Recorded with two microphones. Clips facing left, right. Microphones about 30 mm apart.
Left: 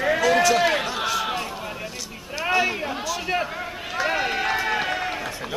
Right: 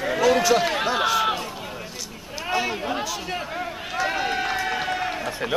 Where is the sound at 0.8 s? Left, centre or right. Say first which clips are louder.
Right 4 dB; centre.